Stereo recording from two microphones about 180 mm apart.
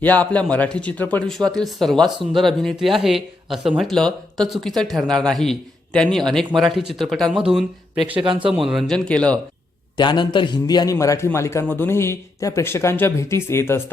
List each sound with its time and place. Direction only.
0.0 s speech: 10° left (ahead or behind)
10.0 s a man's voice: 25° left (ahead or behind)